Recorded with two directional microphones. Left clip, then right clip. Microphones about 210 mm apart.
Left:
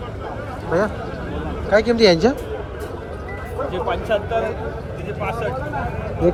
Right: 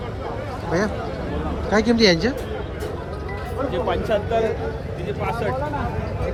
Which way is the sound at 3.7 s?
45° right (ahead or behind).